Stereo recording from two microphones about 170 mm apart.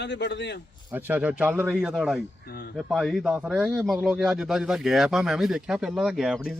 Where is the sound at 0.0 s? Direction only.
90° left.